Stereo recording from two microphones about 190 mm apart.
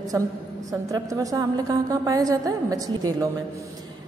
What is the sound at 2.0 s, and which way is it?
Speech, 20° right (ahead or behind).